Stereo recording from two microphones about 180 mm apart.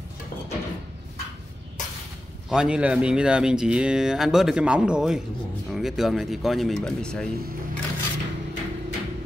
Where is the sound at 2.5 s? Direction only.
5° right (ahead or behind).